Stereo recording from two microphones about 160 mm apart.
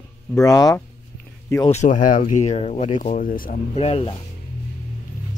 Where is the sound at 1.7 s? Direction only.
50° left (ahead or behind).